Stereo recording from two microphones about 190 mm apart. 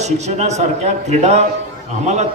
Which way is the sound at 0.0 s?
35° right (ahead or behind).